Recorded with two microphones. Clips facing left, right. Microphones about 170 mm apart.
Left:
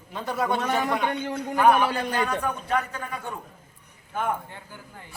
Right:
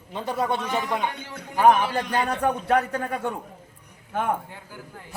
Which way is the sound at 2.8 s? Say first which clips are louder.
Right 5 dB; 45° right (ahead or behind).